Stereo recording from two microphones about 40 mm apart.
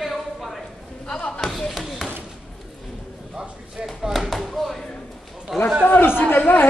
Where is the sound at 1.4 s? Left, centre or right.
Centre.